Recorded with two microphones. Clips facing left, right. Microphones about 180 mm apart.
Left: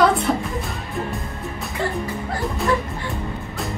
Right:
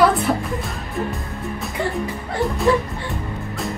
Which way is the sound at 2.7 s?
25° right (ahead or behind).